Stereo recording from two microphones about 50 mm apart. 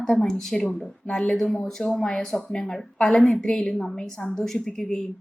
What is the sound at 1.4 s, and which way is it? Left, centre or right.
Speech, centre.